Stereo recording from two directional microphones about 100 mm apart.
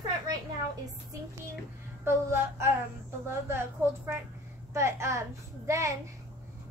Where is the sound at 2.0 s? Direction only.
25° right (ahead or behind).